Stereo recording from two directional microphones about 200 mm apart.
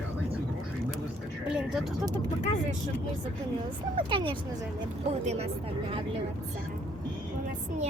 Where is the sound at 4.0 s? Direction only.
25° right (ahead or behind).